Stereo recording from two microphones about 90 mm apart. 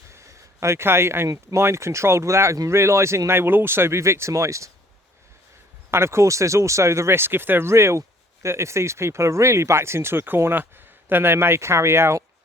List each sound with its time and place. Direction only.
0.1 s a sound: 30° right (ahead or behind)
1.3 s speech: 35° right (ahead or behind)
5.9 s speech: 30° right (ahead or behind)